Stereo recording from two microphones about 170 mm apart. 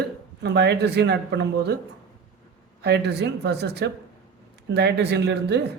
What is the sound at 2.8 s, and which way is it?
Speech, 75° right (ahead or behind).